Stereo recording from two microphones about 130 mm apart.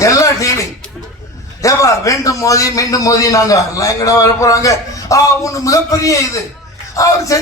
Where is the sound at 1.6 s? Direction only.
25° left (ahead or behind).